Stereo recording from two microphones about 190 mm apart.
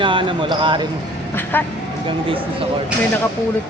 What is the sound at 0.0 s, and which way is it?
Speech, 25° right (ahead or behind).